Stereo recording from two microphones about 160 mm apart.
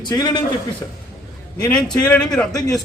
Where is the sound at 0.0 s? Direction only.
25° left (ahead or behind).